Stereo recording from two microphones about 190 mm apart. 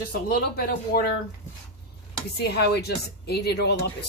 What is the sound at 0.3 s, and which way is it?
Speech, 55° left (ahead or behind).